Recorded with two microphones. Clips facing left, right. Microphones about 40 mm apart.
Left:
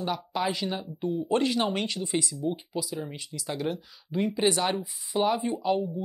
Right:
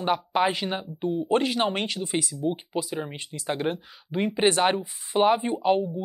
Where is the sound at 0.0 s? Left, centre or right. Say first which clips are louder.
Right 6 dB; right.